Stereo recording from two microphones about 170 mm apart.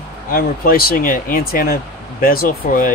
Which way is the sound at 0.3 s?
60° left (ahead or behind).